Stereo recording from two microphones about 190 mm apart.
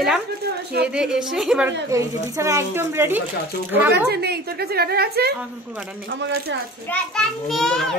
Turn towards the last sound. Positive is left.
turn(degrees=0)  # may be behind; listen again after turning